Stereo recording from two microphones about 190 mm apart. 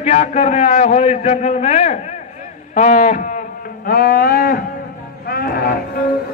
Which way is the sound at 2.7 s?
40° left (ahead or behind).